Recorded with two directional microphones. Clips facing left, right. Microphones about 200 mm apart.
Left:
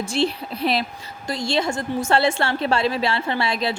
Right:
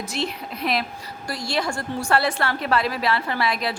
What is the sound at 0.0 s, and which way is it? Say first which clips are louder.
A woman's voice: left 6 dB; 30° left (ahead or behind).